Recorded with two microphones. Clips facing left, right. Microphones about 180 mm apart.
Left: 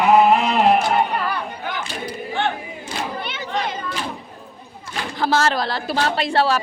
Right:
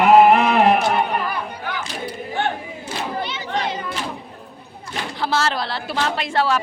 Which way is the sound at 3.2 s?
55° left (ahead or behind).